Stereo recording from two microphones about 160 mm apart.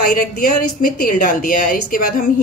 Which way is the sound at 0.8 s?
60° left (ahead or behind).